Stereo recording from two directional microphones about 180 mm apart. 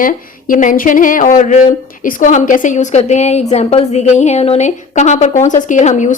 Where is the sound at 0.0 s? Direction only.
50° left (ahead or behind).